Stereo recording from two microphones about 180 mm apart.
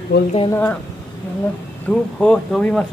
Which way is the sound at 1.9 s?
5° left (ahead or behind).